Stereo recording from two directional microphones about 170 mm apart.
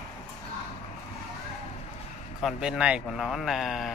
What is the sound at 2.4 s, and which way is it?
A man's voice, 5° right (ahead or behind).